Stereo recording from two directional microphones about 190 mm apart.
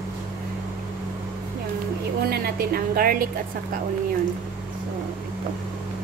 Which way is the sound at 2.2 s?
55° right (ahead or behind).